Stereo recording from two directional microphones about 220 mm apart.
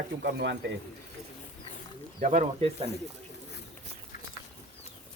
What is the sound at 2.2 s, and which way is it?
Speech, 35° right (ahead or behind).